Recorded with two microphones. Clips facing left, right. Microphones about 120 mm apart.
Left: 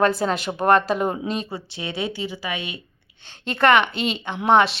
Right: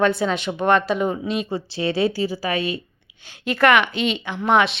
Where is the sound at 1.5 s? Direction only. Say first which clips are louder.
Right 7 dB; 30° right (ahead or behind).